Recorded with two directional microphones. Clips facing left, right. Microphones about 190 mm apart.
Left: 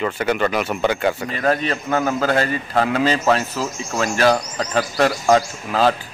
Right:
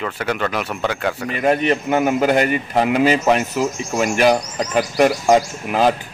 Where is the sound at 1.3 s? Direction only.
15° right (ahead or behind).